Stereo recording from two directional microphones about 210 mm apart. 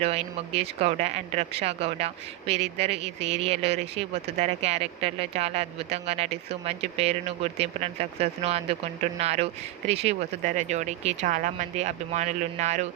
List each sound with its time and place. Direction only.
0.0 s speech: 30° right (ahead or behind)